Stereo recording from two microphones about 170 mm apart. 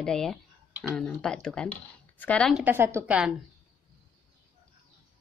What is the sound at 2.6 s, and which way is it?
Speech, 15° right (ahead or behind).